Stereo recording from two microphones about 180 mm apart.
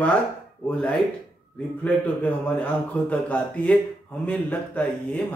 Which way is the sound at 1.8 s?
10° left (ahead or behind).